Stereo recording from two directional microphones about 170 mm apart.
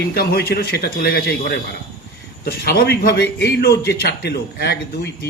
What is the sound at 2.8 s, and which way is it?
A man's voice, 70° left (ahead or behind).